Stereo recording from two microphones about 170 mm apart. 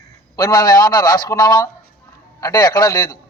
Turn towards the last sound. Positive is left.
turn(degrees=20)  # may be behind; listen again after turning